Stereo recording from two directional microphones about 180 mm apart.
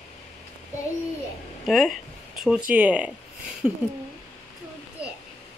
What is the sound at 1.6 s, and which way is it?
Speech, centre (ahead or behind).